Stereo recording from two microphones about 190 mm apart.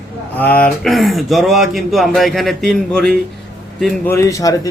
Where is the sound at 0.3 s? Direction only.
10° left (ahead or behind).